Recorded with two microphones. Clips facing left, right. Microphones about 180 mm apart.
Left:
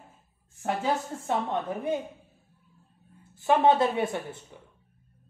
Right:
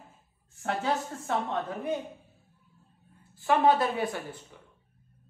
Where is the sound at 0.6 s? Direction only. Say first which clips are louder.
Left 2 dB; 20° left (ahead or behind).